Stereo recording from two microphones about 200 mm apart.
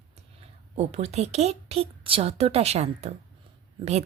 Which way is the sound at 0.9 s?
35° right (ahead or behind).